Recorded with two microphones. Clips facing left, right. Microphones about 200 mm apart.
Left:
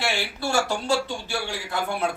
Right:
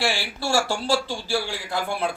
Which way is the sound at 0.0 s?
30° right (ahead or behind).